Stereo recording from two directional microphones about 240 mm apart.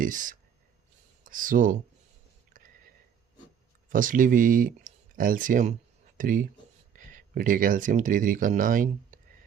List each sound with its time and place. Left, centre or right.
0.0 s speech: right
3.8 s speech: right